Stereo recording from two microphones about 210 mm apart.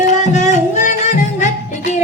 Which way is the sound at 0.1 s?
35° left (ahead or behind).